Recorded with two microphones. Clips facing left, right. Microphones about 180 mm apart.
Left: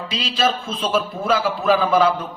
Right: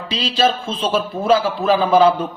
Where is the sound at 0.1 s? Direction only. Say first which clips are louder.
Right 4 dB; 30° right (ahead or behind).